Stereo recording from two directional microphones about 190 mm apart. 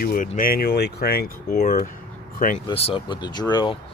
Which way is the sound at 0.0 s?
50° left (ahead or behind).